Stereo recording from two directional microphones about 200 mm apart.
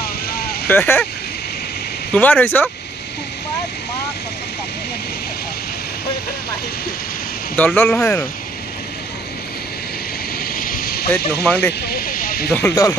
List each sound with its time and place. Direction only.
0.7 s speech: 10° left (ahead or behind)
2.1 s speech: 10° left (ahead or behind)
7.5 s speech: 10° left (ahead or behind)
10.5 s a sound: 45° left (ahead or behind)
11.4 s speech: 5° left (ahead or behind)
11.8 s snake: 45° left (ahead or behind)
12.5 s speech: 15° left (ahead or behind)